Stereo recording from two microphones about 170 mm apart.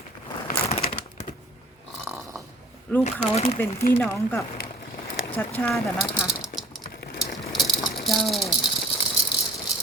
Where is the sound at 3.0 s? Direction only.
35° left (ahead or behind).